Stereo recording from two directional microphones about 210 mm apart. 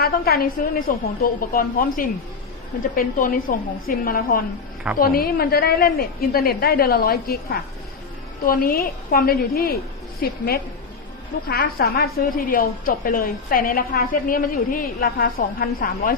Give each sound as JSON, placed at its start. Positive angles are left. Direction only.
{"t": 0.0, "sound": "a woman's voice", "side_deg": 45}
{"t": 8.4, "sound": "a woman's voice", "side_deg": 45}